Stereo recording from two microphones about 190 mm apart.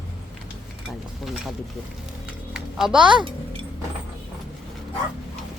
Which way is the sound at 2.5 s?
5° right (ahead or behind).